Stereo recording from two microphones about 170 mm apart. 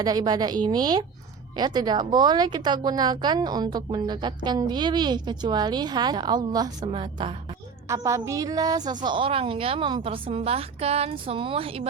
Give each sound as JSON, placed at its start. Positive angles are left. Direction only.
{"t": 0.0, "sound": "speech", "side_deg": -25}
{"t": 7.9, "sound": "a woman's voice", "side_deg": -15}